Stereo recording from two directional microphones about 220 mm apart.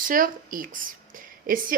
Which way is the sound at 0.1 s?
40° right (ahead or behind).